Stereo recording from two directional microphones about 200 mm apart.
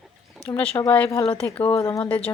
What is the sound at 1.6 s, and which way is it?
Speech, 30° left (ahead or behind).